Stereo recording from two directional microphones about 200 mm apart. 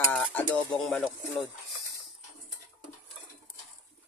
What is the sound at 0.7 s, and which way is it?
Speech, 5° left (ahead or behind).